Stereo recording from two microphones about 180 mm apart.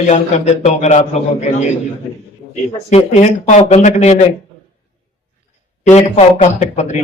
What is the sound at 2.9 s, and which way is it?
A man's voice, 35° left (ahead or behind).